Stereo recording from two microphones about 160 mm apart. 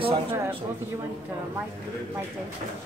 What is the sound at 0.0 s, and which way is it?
Speech, 35° right (ahead or behind).